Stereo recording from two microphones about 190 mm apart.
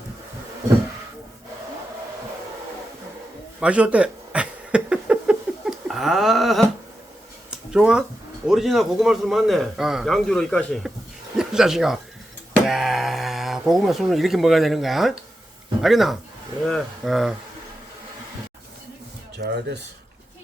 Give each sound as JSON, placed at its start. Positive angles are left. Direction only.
{"t": 3.6, "sound": "a sound", "side_deg": -5}
{"t": 8.4, "sound": "a man's voice", "side_deg": 0}
{"t": 19.4, "sound": "speech", "side_deg": -60}